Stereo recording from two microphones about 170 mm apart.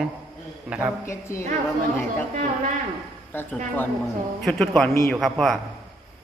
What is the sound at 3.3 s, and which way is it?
Speech, 10° left (ahead or behind).